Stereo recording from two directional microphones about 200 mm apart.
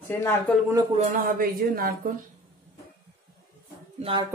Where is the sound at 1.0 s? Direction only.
45° right (ahead or behind).